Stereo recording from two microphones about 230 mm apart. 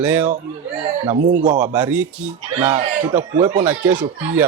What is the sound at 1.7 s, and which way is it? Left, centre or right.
Speech, centre.